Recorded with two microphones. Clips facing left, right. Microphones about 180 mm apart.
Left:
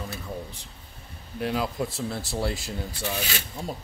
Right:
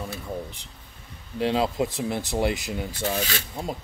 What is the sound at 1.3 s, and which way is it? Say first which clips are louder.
Speech: right 4 dB; 25° right (ahead or behind).